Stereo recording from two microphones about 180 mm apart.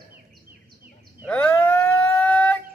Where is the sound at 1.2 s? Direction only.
10° left (ahead or behind).